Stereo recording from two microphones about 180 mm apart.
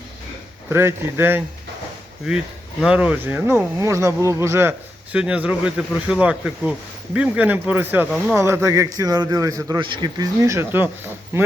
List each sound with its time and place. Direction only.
0.7 s speech: 15° right (ahead or behind)
2.8 s speech: 5° right (ahead or behind)